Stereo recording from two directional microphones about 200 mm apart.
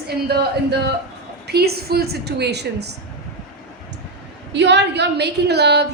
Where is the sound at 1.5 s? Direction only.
55° right (ahead or behind).